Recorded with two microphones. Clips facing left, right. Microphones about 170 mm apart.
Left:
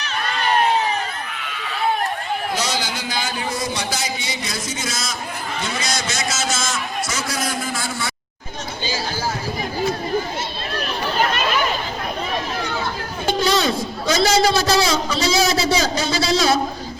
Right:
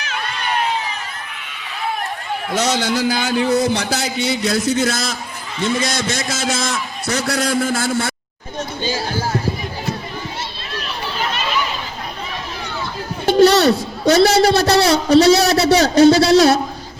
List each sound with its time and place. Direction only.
2.8 s a man's voice: 65° right (ahead or behind)
10.8 s a sound: 50° left (ahead or behind)
13.2 s a man's voice: 70° right (ahead or behind)